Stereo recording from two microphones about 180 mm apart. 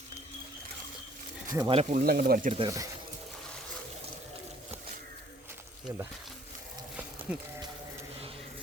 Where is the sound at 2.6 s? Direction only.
20° right (ahead or behind).